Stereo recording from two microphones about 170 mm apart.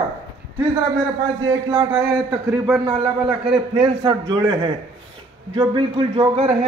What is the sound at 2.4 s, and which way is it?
Speech, 5° right (ahead or behind).